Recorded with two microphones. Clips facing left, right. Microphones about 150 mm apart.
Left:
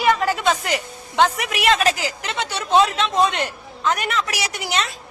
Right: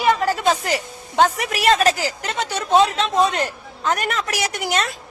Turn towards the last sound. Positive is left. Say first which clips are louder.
# right 2 dB
turn(degrees=-50)  # may be behind; listen again after turning